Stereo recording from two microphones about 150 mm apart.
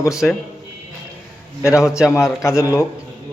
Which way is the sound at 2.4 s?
20° left (ahead or behind).